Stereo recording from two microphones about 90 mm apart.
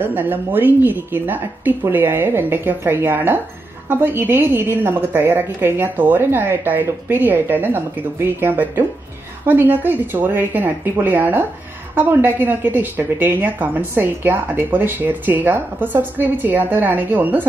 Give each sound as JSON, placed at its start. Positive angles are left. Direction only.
{"t": 0.0, "sound": "a woman's voice", "side_deg": -20}